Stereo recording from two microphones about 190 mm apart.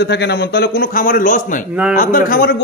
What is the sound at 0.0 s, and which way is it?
A man's voice, 65° left (ahead or behind).